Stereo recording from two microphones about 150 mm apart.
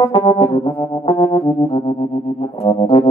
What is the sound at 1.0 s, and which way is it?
Music, 30° left (ahead or behind).